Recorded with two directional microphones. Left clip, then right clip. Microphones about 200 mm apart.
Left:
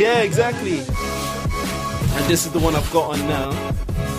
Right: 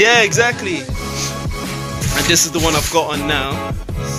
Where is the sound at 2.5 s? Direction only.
Centre (ahead or behind).